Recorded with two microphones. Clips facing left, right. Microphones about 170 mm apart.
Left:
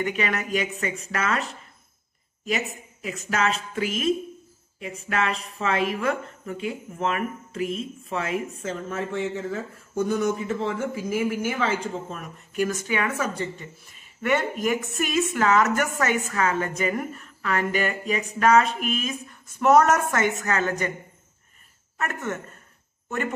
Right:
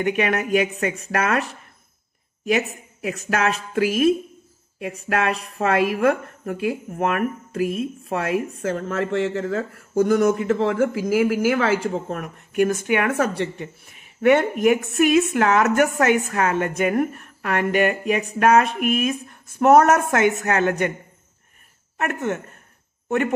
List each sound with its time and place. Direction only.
0.0 s a woman's voice: 60° right (ahead or behind)
2.4 s a woman's voice: 70° right (ahead or behind)
5.6 s a woman's voice: 55° right (ahead or behind)
21.9 s speech: 60° right (ahead or behind)